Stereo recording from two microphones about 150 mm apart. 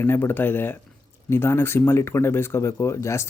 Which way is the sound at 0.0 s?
15° left (ahead or behind).